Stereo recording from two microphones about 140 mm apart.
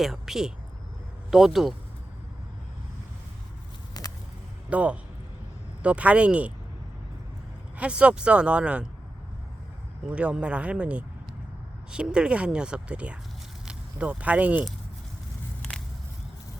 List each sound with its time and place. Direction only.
0.0 s speech: centre (ahead or behind)
4.0 s a sound: 25° left (ahead or behind)
4.7 s speech: 10° right (ahead or behind)
7.8 s speech: 10° right (ahead or behind)
10.1 s speech: 10° right (ahead or behind)